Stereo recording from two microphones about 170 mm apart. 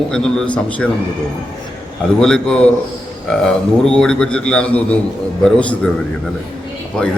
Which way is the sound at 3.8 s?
5° left (ahead or behind).